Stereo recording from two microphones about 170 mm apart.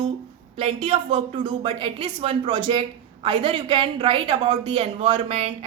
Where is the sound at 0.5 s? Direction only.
35° right (ahead or behind).